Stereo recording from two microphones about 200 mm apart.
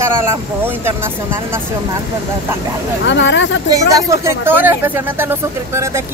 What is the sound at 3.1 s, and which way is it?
Speech, 65° left (ahead or behind).